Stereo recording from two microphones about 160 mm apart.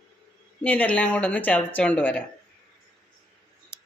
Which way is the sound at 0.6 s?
10° left (ahead or behind).